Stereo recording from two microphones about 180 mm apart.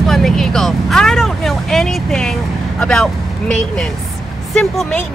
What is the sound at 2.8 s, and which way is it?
Speech, 5° left (ahead or behind).